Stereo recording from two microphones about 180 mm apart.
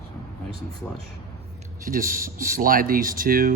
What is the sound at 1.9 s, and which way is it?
Speech, 50° right (ahead or behind).